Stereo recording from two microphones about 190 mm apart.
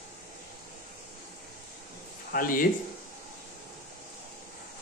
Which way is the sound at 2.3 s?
45° left (ahead or behind).